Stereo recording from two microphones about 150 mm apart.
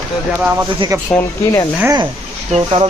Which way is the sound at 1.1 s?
25° left (ahead or behind).